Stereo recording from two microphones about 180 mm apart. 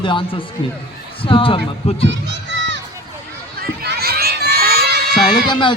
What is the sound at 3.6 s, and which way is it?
Crowd, 60° right (ahead or behind).